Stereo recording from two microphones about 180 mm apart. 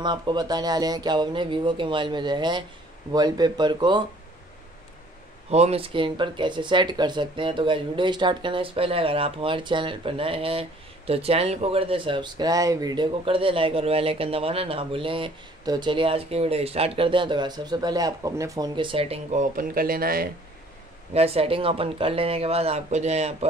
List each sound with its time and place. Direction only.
0.0 s speech: 25° right (ahead or behind)
5.5 s speech: 35° right (ahead or behind)
19.5 s speech: 55° right (ahead or behind)
21.1 s speech: 35° right (ahead or behind)